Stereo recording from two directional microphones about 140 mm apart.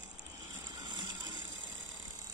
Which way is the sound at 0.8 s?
30° right (ahead or behind).